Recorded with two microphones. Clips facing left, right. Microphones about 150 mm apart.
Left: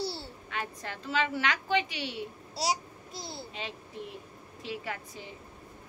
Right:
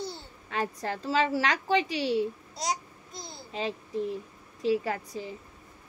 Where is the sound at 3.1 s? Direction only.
30° left (ahead or behind).